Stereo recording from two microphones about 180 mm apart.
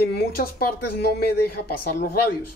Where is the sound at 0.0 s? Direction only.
60° left (ahead or behind).